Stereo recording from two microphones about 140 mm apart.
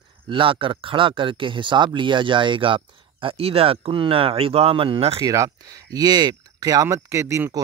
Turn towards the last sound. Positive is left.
turn(degrees=-20)  # may be behind; listen again after turning